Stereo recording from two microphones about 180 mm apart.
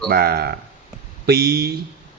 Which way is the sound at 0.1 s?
55° right (ahead or behind).